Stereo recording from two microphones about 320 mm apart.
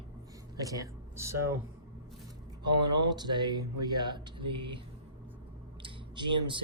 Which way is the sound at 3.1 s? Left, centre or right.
Centre.